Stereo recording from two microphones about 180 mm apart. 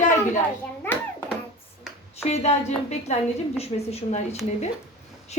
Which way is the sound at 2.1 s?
35° left (ahead or behind).